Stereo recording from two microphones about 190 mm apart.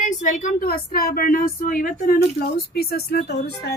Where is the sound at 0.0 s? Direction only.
40° left (ahead or behind).